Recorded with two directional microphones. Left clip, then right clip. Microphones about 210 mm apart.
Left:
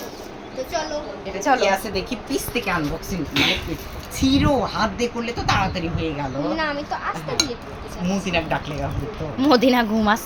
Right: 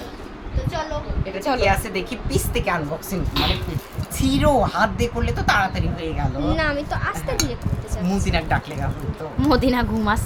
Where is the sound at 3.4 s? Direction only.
Centre (ahead or behind).